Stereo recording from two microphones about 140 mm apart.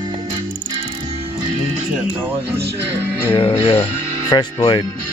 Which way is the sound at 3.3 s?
45° left (ahead or behind).